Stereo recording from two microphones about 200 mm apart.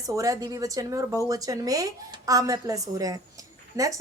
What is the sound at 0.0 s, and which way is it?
Speech, 15° right (ahead or behind).